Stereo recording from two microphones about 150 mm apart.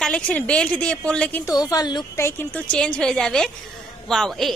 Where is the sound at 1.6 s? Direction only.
25° left (ahead or behind).